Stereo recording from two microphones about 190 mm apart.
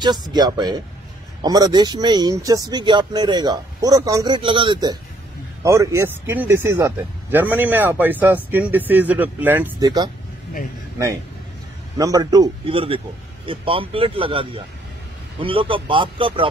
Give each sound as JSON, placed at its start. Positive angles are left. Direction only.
{"t": 0.0, "sound": "speech", "side_deg": -20}
{"t": 12.0, "sound": "speech", "side_deg": -20}